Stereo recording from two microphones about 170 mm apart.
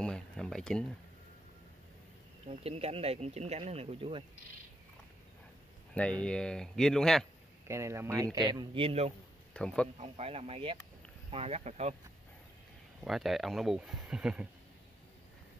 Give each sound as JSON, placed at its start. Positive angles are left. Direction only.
{"t": 0.0, "sound": "a sound", "side_deg": 5}
{"t": 2.4, "sound": "speech", "side_deg": -35}
{"t": 6.2, "sound": "speech", "side_deg": 5}
{"t": 7.6, "sound": "speech", "side_deg": -15}
{"t": 9.5, "sound": "speech", "side_deg": 5}
{"t": 9.9, "sound": "speech", "side_deg": -40}
{"t": 13.0, "sound": "speech", "side_deg": 0}